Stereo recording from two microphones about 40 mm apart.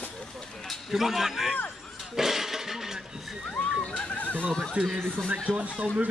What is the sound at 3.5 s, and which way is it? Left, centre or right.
Speech, left.